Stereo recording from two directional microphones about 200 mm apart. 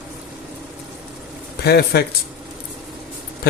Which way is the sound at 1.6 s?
50° left (ahead or behind).